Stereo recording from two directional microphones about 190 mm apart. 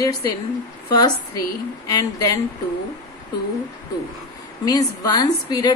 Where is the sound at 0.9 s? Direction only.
20° left (ahead or behind).